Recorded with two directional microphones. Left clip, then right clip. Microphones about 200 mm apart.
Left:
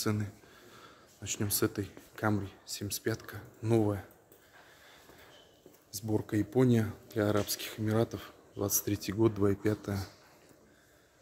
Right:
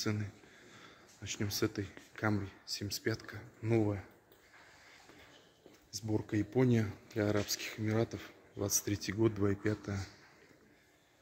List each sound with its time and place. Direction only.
0.0 s speech: 15° left (ahead or behind)
5.9 s speech: 10° left (ahead or behind)